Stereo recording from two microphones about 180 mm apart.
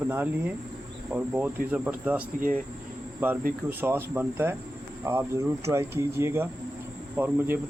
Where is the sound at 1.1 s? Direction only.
10° right (ahead or behind).